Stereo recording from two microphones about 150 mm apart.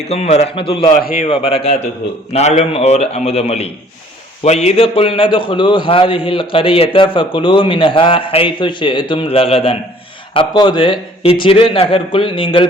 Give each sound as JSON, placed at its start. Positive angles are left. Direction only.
{"t": 0.1, "sound": "a man's voice", "side_deg": 45}